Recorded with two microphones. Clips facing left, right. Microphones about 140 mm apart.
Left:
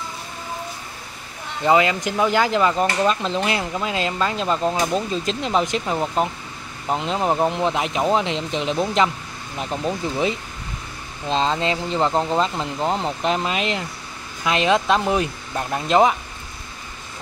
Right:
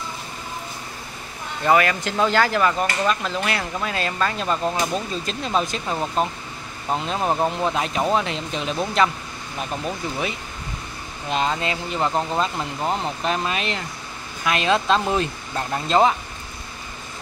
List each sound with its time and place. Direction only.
1.6 s speech: 20° left (ahead or behind)